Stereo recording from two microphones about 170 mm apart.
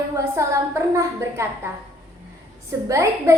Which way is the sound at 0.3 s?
15° right (ahead or behind).